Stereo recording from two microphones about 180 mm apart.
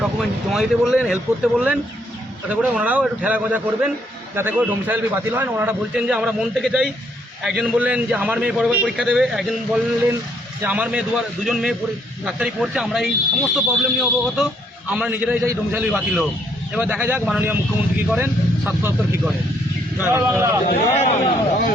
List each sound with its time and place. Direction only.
0.0 s a man's voice: centre (ahead or behind)
20.7 s speech: 40° left (ahead or behind)